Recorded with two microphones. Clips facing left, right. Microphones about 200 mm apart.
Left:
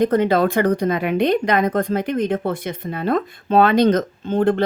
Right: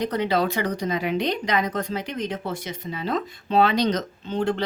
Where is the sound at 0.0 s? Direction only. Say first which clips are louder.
Left 7 dB; 50° left (ahead or behind).